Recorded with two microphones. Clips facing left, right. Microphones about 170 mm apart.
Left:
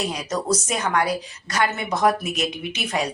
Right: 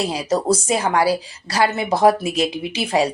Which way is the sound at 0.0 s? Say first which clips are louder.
Right 6 dB; 30° right (ahead or behind).